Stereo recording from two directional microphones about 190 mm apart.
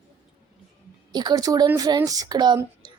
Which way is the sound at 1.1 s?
20° right (ahead or behind).